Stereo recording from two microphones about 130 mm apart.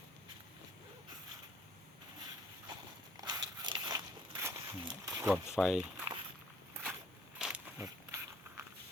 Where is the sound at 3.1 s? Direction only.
30° right (ahead or behind).